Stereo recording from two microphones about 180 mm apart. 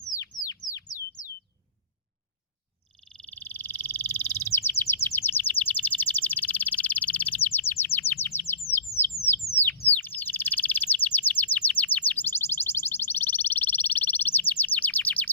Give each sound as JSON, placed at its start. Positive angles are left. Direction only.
{"t": 0.4, "sound": "a sound", "side_deg": 20}
{"t": 3.1, "sound": "frog", "side_deg": 10}
{"t": 5.0, "sound": "bird", "side_deg": 10}
{"t": 8.4, "sound": "chirp", "side_deg": 15}
{"t": 8.7, "sound": "bird", "side_deg": 10}